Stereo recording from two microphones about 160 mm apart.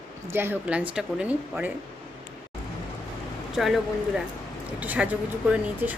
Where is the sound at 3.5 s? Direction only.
Centre (ahead or behind).